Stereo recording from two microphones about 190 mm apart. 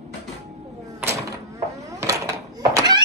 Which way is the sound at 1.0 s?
15° right (ahead or behind).